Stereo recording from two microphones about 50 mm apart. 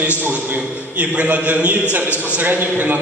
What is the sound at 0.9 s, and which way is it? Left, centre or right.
A man's voice, right.